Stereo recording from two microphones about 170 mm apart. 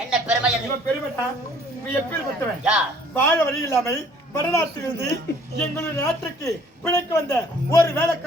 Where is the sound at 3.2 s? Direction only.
15° left (ahead or behind).